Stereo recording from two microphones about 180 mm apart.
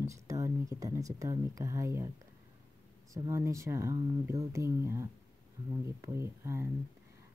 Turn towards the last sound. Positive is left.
turn(degrees=-15)  # may be behind; listen again after turning